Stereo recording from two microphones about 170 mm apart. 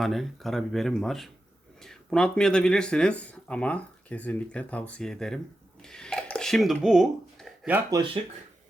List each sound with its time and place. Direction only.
0.0 s speech: centre (ahead or behind)
7.9 s speech: 20° right (ahead or behind)